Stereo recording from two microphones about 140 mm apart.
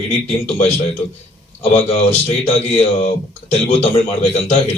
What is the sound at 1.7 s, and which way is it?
Speech, 50° left (ahead or behind).